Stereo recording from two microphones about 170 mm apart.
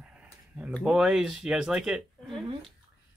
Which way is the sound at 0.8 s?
5° right (ahead or behind).